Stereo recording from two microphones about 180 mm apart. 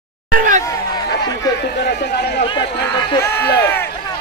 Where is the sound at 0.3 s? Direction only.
50° right (ahead or behind).